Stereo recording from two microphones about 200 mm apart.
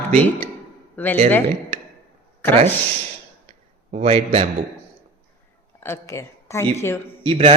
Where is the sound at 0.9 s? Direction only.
10° left (ahead or behind).